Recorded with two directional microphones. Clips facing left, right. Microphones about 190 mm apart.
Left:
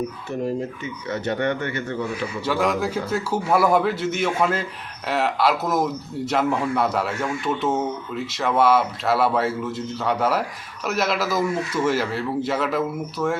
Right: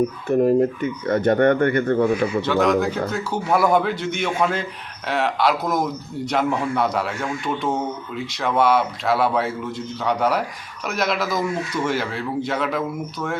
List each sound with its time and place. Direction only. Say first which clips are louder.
0.3 s speech: right 11 dB; 55° right (ahead or behind)
2.4 s a man's voice: even; 10° left (ahead or behind)